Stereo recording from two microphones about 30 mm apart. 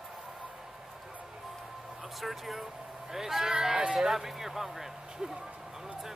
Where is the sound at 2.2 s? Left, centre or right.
Centre.